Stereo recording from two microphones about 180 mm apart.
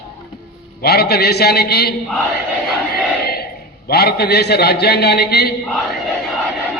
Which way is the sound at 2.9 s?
60° left (ahead or behind).